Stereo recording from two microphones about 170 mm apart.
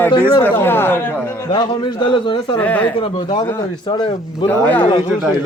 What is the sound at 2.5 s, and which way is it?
Speech, 10° left (ahead or behind).